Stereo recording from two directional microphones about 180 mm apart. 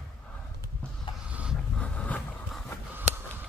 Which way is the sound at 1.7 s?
5° left (ahead or behind).